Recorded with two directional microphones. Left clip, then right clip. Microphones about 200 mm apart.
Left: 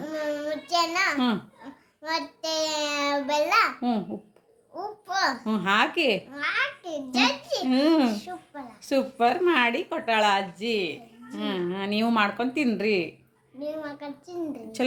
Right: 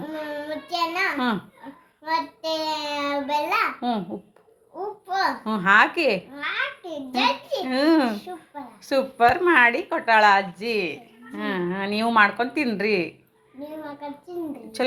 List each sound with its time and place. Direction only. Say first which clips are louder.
0.1 s child singing: left 3 dB; 25° left (ahead or behind)
5.0 s a child's voice: right 2 dB; 20° left (ahead or behind)
14.8 s a child's voice: right 3 dB; 15° left (ahead or behind)